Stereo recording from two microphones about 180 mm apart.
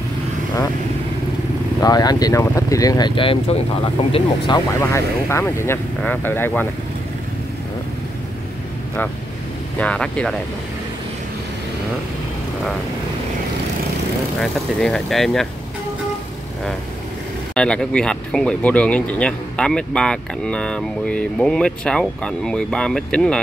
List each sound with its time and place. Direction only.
1.8 s speech: 20° left (ahead or behind)
4.7 s speech: 15° left (ahead or behind)
9.8 s speech: 5° left (ahead or behind)
14.4 s speech: centre (ahead or behind)
17.6 s speech: 5° left (ahead or behind)